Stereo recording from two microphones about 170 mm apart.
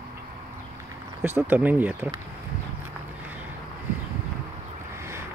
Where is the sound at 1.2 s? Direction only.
10° right (ahead or behind).